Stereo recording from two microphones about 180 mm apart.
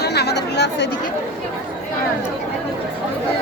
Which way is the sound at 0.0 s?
65° left (ahead or behind).